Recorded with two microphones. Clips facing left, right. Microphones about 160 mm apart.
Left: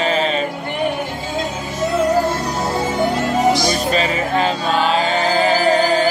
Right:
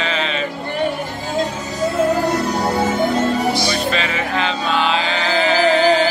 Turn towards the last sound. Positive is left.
turn(degrees=45)  # may be behind; listen again after turning